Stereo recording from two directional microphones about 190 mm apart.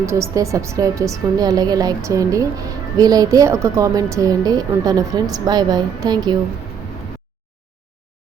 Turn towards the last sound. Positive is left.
turn(degrees=-20)  # may be behind; listen again after turning